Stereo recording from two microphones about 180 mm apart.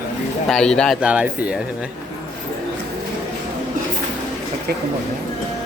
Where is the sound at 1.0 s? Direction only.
5° right (ahead or behind).